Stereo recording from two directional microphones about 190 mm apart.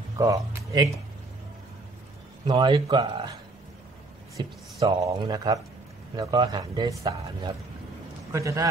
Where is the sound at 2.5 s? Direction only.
25° right (ahead or behind).